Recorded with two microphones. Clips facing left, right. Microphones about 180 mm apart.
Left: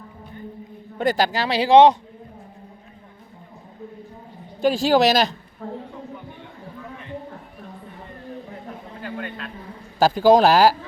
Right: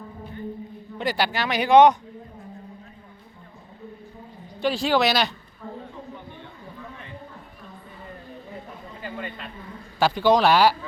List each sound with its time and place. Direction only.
0.9 s speech: 45° left (ahead or behind); by 2.0 s 30° left (ahead or behind)
4.6 s speech: 45° left (ahead or behind)
9.0 s a man's voice: centre (ahead or behind)
10.0 s speech: 40° left (ahead or behind)